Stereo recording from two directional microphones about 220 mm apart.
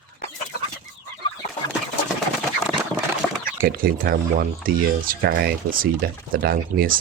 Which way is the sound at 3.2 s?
Centre (ahead or behind).